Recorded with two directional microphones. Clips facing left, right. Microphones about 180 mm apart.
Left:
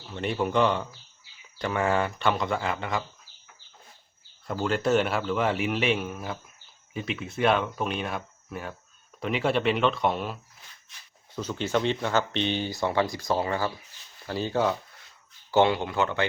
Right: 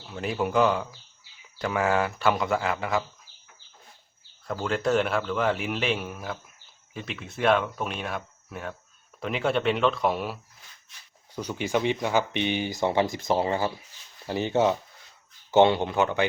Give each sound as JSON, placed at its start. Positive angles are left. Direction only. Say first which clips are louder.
{"t": 0.1, "sound": "speech", "louder": "even", "side_deg": -5}
{"t": 4.6, "sound": "speech", "louder": "left 1 dB", "side_deg": 0}
{"t": 11.3, "sound": "speech", "louder": "even", "side_deg": -15}